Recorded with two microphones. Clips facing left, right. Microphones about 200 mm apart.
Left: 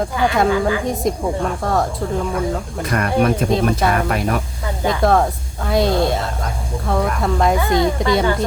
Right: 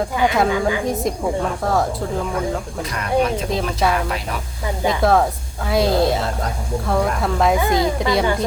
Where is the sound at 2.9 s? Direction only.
55° left (ahead or behind).